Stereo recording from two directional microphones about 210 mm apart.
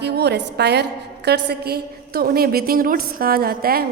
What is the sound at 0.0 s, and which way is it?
A woman's voice, 50° right (ahead or behind).